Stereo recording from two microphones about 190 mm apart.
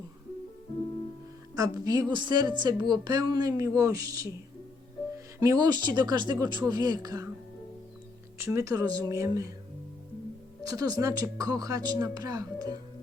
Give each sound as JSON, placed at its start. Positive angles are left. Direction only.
{"t": 1.5, "sound": "a woman's voice", "side_deg": -20}
{"t": 5.4, "sound": "speech", "side_deg": -20}
{"t": 8.4, "sound": "a woman's voice", "side_deg": -15}
{"t": 10.6, "sound": "speech", "side_deg": -20}